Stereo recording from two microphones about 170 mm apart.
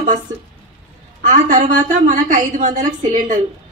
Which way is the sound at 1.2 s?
50° right (ahead or behind).